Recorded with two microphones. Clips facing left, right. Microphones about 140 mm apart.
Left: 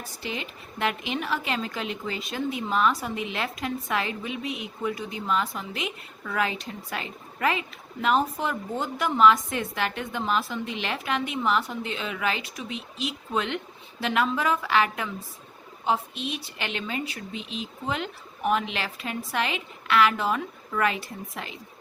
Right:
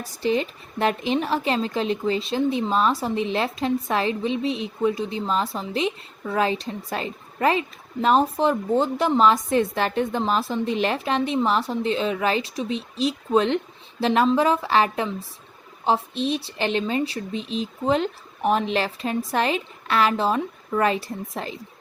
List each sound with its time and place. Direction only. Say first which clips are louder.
0.2 s a woman's voice: right 13 dB; 35° right (ahead or behind)